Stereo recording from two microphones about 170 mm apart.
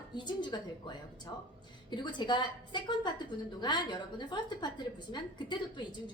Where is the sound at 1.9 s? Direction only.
25° left (ahead or behind).